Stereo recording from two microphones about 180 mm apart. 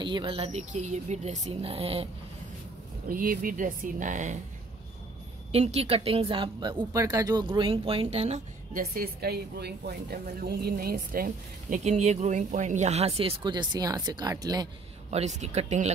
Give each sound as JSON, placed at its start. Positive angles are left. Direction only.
{"t": 0.0, "sound": "speech", "side_deg": -25}
{"t": 3.1, "sound": "speech", "side_deg": -50}
{"t": 5.5, "sound": "speech", "side_deg": -35}
{"t": 8.7, "sound": "speech", "side_deg": -55}
{"t": 15.0, "sound": "speech", "side_deg": -40}